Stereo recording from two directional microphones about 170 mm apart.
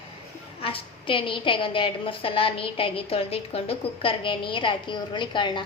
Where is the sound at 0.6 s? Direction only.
35° left (ahead or behind).